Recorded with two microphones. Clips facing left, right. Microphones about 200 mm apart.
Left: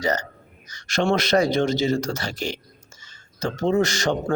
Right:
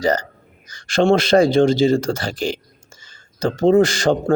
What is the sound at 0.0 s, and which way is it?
A man's voice, 30° right (ahead or behind).